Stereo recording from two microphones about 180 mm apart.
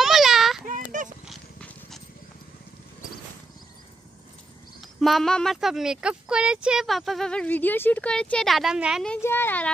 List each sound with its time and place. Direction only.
0.0 s a sound: centre (ahead or behind)
0.7 s horse: 45° right (ahead or behind)
1.2 s dog: centre (ahead or behind)
5.0 s speech: centre (ahead or behind)
9.2 s speech: 10° left (ahead or behind)